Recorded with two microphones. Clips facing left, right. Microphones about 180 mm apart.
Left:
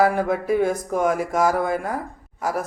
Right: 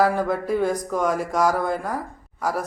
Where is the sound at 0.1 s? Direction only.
10° left (ahead or behind).